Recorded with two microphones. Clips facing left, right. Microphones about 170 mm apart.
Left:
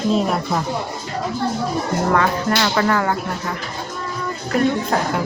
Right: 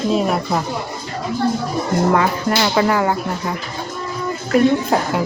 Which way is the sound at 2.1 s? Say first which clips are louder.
Right 1 dB; 10° right (ahead or behind).